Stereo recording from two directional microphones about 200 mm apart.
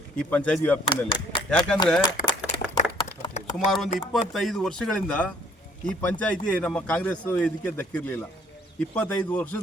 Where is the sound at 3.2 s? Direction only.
30° left (ahead or behind).